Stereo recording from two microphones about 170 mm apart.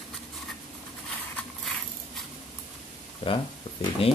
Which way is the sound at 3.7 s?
30° left (ahead or behind).